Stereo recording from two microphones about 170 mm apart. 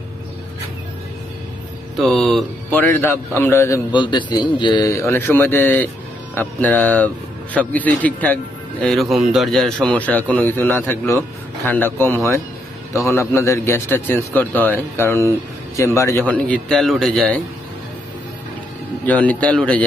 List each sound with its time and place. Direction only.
2.0 s a man's voice: centre (ahead or behind); by 4.0 s 15° left (ahead or behind)
4.0 s a man's voice: 25° left (ahead or behind); by 17.4 s 5° left (ahead or behind)
19.0 s a man's voice: 10° left (ahead or behind)